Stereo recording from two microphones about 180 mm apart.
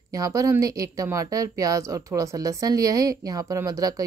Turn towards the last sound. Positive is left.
turn(degrees=-20)  # may be behind; listen again after turning